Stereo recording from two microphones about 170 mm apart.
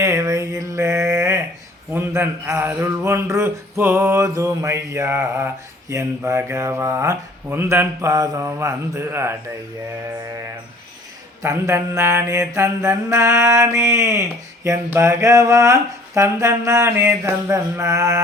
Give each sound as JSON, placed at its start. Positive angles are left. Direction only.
{"t": 0.0, "sound": "mantra", "side_deg": -15}
{"t": 1.9, "sound": "a man's voice", "side_deg": -15}
{"t": 11.4, "sound": "a man's voice", "side_deg": -15}